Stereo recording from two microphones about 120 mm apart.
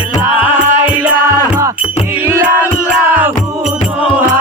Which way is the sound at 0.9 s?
10° right (ahead or behind).